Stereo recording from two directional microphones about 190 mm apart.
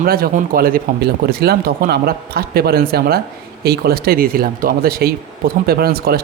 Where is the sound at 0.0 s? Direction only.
50° right (ahead or behind).